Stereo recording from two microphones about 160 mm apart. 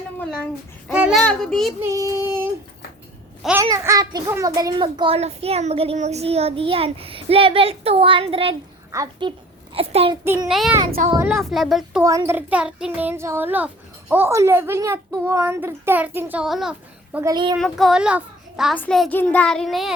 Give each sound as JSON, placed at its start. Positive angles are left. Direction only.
{"t": 0.9, "sound": "a child's voice", "side_deg": -10}
{"t": 1.2, "sound": "child singing", "side_deg": 5}
{"t": 1.8, "sound": "a child's voice", "side_deg": -20}
{"t": 3.6, "sound": "a child's voice", "side_deg": -20}
{"t": 8.9, "sound": "a woman's voice", "side_deg": -20}
{"t": 9.7, "sound": "a child's voice", "side_deg": -35}
{"t": 10.2, "sound": "a child's voice", "side_deg": -15}
{"t": 11.2, "sound": "child singing", "side_deg": 0}
{"t": 12.0, "sound": "a child's voice", "side_deg": -20}
{"t": 17.3, "sound": "a woman's voice", "side_deg": -30}
{"t": 17.6, "sound": "a child's voice", "side_deg": 0}
{"t": 18.8, "sound": "child singing", "side_deg": 5}